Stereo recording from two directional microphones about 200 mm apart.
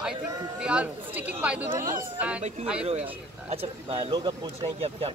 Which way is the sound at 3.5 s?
25° right (ahead or behind).